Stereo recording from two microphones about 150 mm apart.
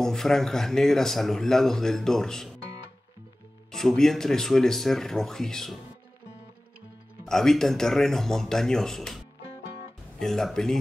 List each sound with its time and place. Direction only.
0.0 s a man's voice: centre (ahead or behind)
3.7 s a man's voice: centre (ahead or behind)
7.2 s a man's voice: 5° left (ahead or behind)